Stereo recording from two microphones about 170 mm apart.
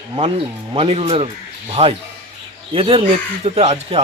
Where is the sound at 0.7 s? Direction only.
35° right (ahead or behind).